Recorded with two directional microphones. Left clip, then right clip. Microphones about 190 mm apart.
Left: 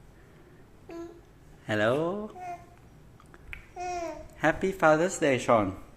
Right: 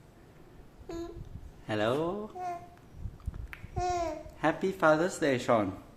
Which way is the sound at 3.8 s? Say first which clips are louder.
Right 3 dB; 15° right (ahead or behind).